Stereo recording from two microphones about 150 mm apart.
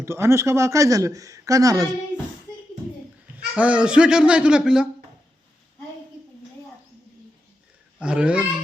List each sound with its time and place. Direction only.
0.0 s speech: 20° right (ahead or behind)
3.3 s speech: 10° right (ahead or behind)
7.9 s a child's voice: 5° right (ahead or behind)